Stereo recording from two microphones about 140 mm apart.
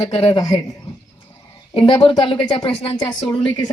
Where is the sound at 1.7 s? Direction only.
40° left (ahead or behind).